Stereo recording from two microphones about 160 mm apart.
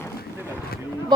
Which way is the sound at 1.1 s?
30° right (ahead or behind).